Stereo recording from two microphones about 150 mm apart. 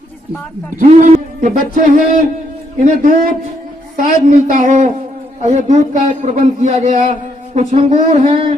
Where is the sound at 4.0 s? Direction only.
55° right (ahead or behind).